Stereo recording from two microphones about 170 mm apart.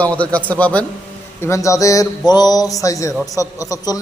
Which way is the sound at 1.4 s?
15° left (ahead or behind).